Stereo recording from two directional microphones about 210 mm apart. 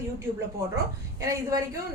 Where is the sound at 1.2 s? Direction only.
15° right (ahead or behind).